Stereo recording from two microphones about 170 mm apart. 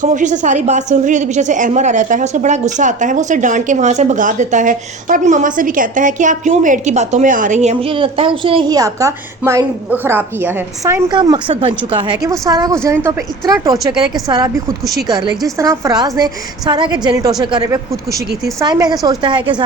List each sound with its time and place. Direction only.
0.0 s a woman's voice: 45° right (ahead or behind); by 11.0 s 15° right (ahead or behind)
11.1 s speech: 25° right (ahead or behind)